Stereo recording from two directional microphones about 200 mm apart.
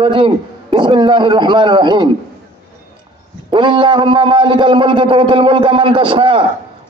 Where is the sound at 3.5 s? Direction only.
25° right (ahead or behind).